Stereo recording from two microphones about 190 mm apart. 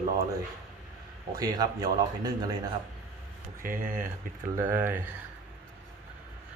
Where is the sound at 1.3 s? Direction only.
20° right (ahead or behind).